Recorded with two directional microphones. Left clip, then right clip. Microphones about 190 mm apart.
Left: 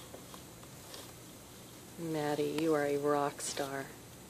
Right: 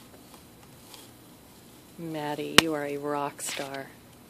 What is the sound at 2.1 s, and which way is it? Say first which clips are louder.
Speech: right 11 dB; 20° right (ahead or behind).